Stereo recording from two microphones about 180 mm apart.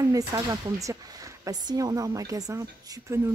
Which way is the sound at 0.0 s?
20° right (ahead or behind).